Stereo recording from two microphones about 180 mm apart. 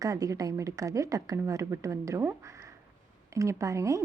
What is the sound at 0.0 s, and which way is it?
A woman's voice, 20° right (ahead or behind).